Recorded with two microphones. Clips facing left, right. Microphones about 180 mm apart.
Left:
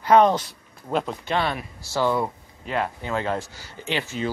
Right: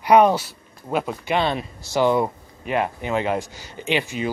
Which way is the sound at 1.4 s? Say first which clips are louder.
Right 4 dB; 25° right (ahead or behind).